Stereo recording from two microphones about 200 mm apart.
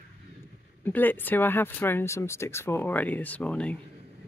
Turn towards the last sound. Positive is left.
turn(degrees=5)  # may be behind; listen again after turning